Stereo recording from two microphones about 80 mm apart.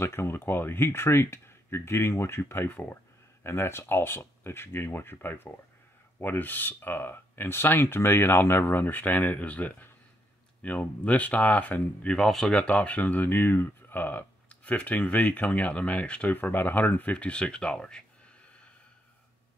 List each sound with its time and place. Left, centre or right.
0.0 s speech: left
12.1 s speech: centre